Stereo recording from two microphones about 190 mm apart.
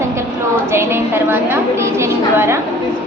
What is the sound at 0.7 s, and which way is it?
A woman's voice, 15° right (ahead or behind).